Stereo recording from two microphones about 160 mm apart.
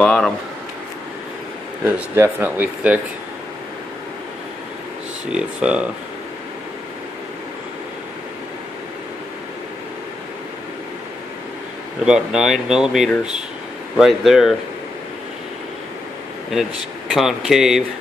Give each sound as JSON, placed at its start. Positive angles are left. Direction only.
{"t": 0.0, "sound": "speech", "side_deg": 5}
{"t": 1.9, "sound": "speech", "side_deg": -15}
{"t": 5.3, "sound": "speech", "side_deg": -5}
{"t": 12.0, "sound": "speech", "side_deg": -5}
{"t": 17.1, "sound": "speech", "side_deg": 0}